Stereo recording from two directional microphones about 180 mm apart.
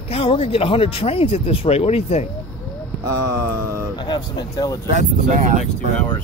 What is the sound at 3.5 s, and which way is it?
Mantra, 15° right (ahead or behind).